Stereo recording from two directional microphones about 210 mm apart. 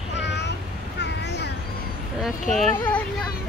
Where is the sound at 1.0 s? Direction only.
55° left (ahead or behind).